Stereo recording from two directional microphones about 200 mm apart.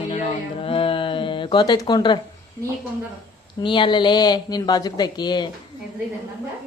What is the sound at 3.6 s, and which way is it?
Speech, 25° left (ahead or behind).